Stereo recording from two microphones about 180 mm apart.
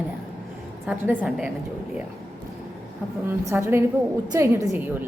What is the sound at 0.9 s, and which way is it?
Speech, 5° right (ahead or behind).